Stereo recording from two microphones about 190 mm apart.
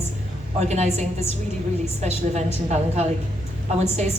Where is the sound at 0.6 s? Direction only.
35° right (ahead or behind).